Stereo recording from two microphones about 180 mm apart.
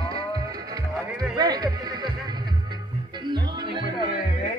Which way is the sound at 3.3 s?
25° right (ahead or behind).